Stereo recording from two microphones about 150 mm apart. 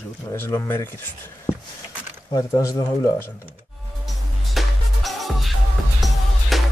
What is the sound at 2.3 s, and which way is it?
Speech, 20° left (ahead or behind).